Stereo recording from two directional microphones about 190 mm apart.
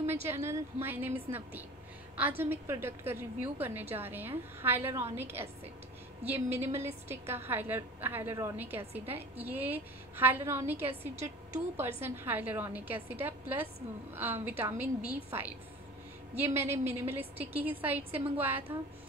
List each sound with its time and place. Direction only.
0.0 s a woman's voice: 10° right (ahead or behind)
12.0 s a woman's voice: 10° right (ahead or behind)
16.3 s a woman's voice: 15° right (ahead or behind)